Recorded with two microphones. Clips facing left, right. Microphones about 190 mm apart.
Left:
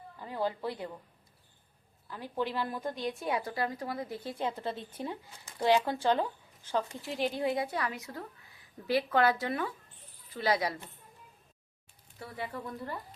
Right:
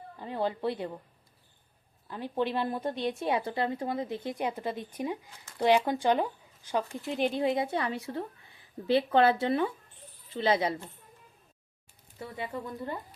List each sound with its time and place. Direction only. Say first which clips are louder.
0.2 s a woman's voice: right 3 dB; 25° right (ahead or behind)
2.0 s a woman's voice: right 4 dB; 20° right (ahead or behind)
12.2 s a woman's voice: right 2 dB; 20° right (ahead or behind)